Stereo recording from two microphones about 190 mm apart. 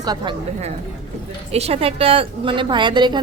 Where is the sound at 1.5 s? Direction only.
30° right (ahead or behind).